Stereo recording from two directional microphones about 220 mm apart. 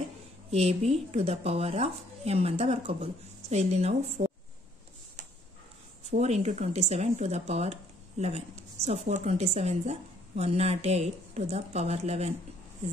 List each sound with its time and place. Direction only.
0.5 s speech: 30° right (ahead or behind)
6.0 s speech: 30° right (ahead or behind)